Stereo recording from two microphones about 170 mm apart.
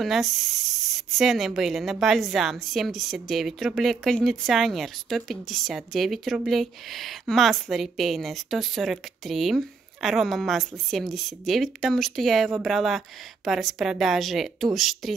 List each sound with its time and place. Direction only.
0.0 s speech: centre (ahead or behind)